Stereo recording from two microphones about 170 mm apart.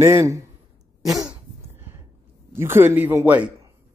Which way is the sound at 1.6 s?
15° right (ahead or behind).